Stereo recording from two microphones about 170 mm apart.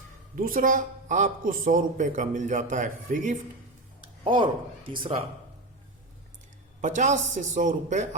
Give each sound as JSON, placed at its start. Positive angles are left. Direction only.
{"t": 0.3, "sound": "speech", "side_deg": -55}
{"t": 4.2, "sound": "speech", "side_deg": -30}
{"t": 6.8, "sound": "speech", "side_deg": -45}